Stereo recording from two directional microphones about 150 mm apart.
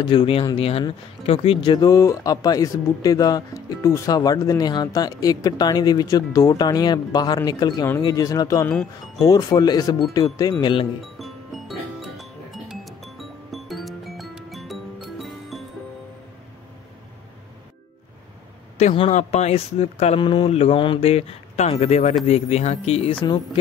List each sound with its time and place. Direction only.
0.0 s speech: 35° left (ahead or behind)
8.6 s speech: 10° left (ahead or behind)
9.2 s speech: 25° left (ahead or behind)
11.1 s music: centre (ahead or behind)
18.9 s speech: 45° left (ahead or behind)
20.2 s speech: 30° left (ahead or behind)
23.2 s speech: 30° left (ahead or behind)